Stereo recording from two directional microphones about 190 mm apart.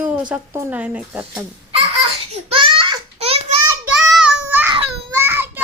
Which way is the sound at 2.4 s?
25° right (ahead or behind).